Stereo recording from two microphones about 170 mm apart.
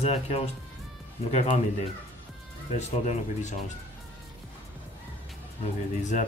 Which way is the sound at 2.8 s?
45° left (ahead or behind).